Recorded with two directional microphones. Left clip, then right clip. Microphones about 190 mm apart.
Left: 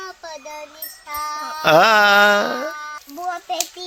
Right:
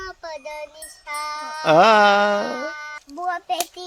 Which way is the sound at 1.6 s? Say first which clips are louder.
Left 1 dB; centre (ahead or behind).